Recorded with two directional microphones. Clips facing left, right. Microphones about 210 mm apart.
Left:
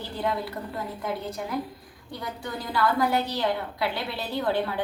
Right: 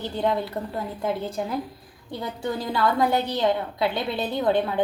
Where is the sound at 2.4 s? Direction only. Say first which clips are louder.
Right 3 dB; 25° right (ahead or behind).